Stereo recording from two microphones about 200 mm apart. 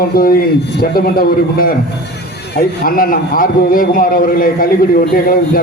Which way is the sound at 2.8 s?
45° left (ahead or behind).